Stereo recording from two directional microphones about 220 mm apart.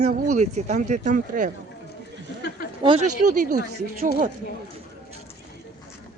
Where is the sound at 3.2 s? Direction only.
40° right (ahead or behind).